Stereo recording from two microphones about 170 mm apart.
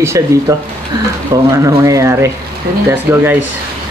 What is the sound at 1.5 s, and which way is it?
Speech, 15° right (ahead or behind).